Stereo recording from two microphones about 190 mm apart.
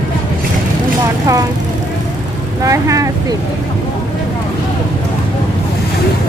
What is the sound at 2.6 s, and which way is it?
Vehicle, 15° right (ahead or behind).